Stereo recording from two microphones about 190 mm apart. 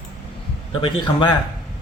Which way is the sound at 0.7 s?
25° left (ahead or behind).